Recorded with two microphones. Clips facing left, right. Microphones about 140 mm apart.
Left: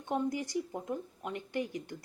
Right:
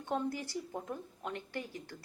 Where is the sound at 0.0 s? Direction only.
15° left (ahead or behind).